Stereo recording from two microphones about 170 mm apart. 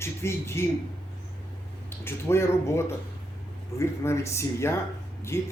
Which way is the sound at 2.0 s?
15° left (ahead or behind).